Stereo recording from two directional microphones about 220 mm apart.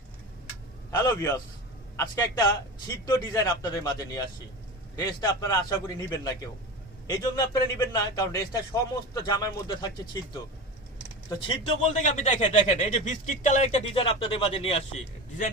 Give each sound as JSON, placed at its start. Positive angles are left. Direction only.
{"t": 0.9, "sound": "a man's voice", "side_deg": 15}
{"t": 7.3, "sound": "a man's voice", "side_deg": 15}
{"t": 11.3, "sound": "speech", "side_deg": 25}